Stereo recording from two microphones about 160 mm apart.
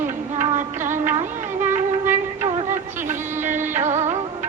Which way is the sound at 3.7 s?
45° right (ahead or behind).